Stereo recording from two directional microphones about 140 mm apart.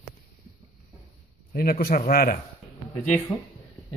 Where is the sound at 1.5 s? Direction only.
90° left.